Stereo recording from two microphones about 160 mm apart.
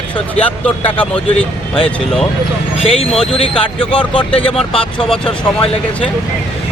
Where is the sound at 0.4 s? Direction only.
10° left (ahead or behind).